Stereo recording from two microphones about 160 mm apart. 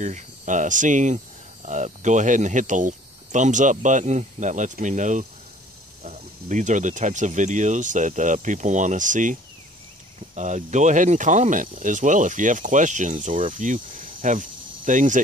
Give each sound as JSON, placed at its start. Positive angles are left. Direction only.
{"t": 0.0, "sound": "speech", "side_deg": -50}